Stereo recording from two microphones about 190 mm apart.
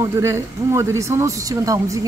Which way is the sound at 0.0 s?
15° right (ahead or behind).